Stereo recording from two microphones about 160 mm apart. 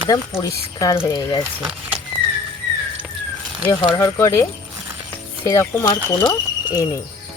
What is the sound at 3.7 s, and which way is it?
Speech, 20° left (ahead or behind).